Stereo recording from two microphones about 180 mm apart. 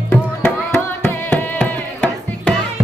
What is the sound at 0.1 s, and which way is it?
Music, 10° left (ahead or behind).